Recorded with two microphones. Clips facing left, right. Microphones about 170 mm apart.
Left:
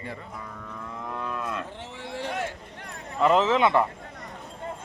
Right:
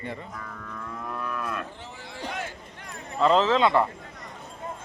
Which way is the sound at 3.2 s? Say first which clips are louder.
Even; 15° left (ahead or behind).